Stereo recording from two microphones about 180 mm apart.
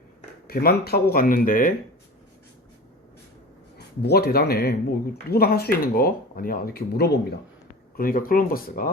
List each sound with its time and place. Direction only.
0.4 s speech: 60° left (ahead or behind)
4.0 s speech: 60° left (ahead or behind)
7.9 s speech: 50° left (ahead or behind)